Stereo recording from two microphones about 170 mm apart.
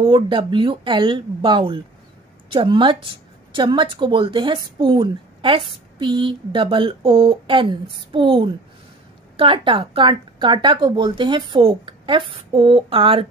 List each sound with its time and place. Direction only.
0.0 s a woman's voice: 30° right (ahead or behind)